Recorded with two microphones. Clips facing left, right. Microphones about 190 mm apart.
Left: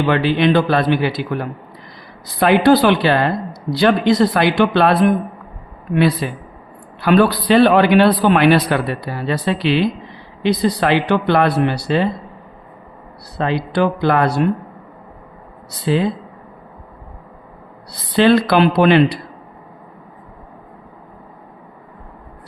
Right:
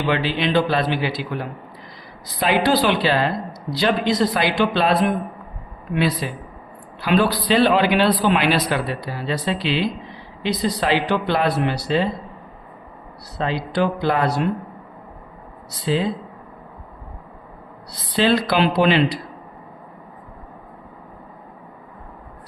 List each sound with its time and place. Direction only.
0.1 s speech: 55° left (ahead or behind)
5.9 s speech: 55° left (ahead or behind)
13.4 s speech: 60° left (ahead or behind)
15.9 s speech: 60° left (ahead or behind)
18.2 s speech: 60° left (ahead or behind)